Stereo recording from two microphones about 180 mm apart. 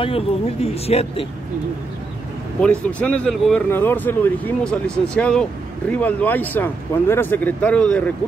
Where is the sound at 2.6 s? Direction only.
5° left (ahead or behind).